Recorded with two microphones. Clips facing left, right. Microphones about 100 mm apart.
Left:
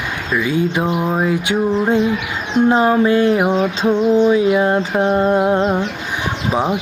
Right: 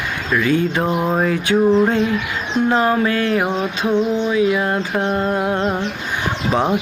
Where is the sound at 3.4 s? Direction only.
5° left (ahead or behind).